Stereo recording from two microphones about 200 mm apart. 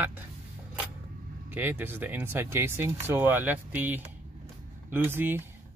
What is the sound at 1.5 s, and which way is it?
Speech, 10° right (ahead or behind).